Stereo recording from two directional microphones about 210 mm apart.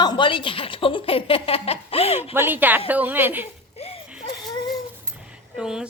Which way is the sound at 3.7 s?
30° left (ahead or behind).